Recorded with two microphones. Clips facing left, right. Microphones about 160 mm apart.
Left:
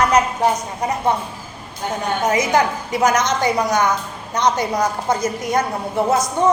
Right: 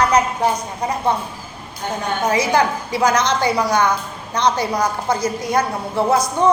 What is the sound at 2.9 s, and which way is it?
Speech, 20° left (ahead or behind).